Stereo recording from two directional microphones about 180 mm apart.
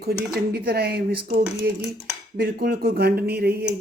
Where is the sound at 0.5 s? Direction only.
65° right (ahead or behind).